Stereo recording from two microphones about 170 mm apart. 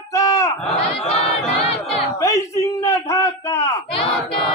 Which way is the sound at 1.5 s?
35° left (ahead or behind).